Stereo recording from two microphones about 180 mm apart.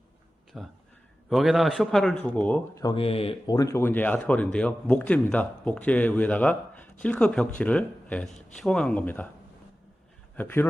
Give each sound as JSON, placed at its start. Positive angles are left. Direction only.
{"t": 0.5, "sound": "a man's voice", "side_deg": 0}
{"t": 2.5, "sound": "a man's voice", "side_deg": 15}
{"t": 2.9, "sound": "a man's voice", "side_deg": 30}
{"t": 10.3, "sound": "a man's voice", "side_deg": 10}